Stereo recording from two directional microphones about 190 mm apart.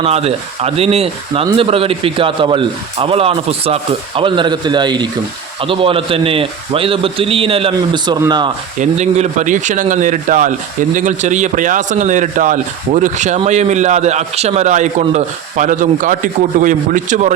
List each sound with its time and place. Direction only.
0.0 s a man's voice: 30° right (ahead or behind)
8.8 s a man's voice: 35° right (ahead or behind)